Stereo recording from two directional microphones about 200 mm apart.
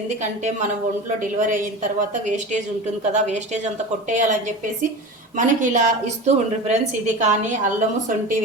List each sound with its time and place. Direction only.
1.2 s speech: 40° right (ahead or behind)